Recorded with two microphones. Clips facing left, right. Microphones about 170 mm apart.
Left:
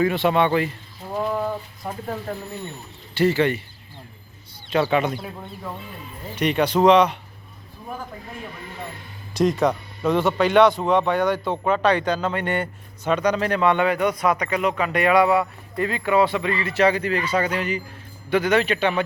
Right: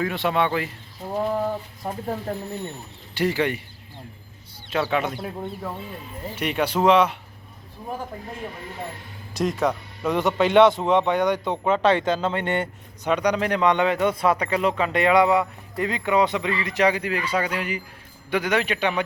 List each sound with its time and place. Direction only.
0.0 s speech: centre (ahead or behind)
1.9 s speech: 25° right (ahead or behind)
3.2 s speech: 10° right (ahead or behind)
4.7 s speech: centre (ahead or behind)
6.3 s speech: 5° right (ahead or behind)
9.3 s speech: 5° right (ahead or behind)